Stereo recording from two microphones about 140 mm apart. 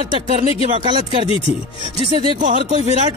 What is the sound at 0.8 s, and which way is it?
Speech, 35° right (ahead or behind).